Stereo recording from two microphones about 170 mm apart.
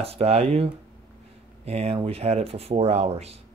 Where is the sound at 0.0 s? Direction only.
35° right (ahead or behind).